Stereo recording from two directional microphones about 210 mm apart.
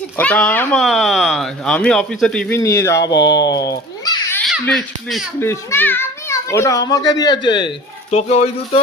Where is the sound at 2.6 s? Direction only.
15° left (ahead or behind).